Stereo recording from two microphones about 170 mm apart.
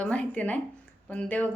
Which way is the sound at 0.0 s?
5° left (ahead or behind).